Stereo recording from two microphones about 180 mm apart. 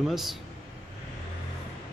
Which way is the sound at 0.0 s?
Centre (ahead or behind).